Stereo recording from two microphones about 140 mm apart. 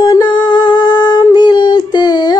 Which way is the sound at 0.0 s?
30° left (ahead or behind).